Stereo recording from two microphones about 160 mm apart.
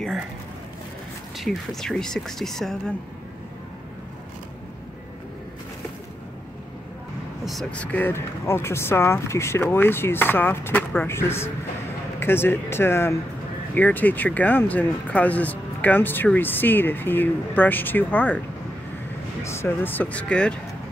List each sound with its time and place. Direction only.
1.4 s speech: centre (ahead or behind)
7.4 s speech: 5° left (ahead or behind)
19.4 s speech: 15° left (ahead or behind)